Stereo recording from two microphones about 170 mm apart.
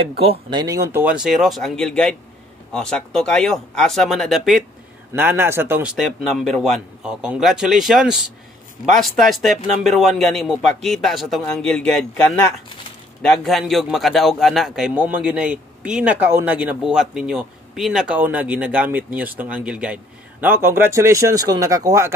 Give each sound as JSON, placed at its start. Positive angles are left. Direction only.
{"t": 0.2, "sound": "a man's voice", "side_deg": -30}
{"t": 5.1, "sound": "a man's voice", "side_deg": -15}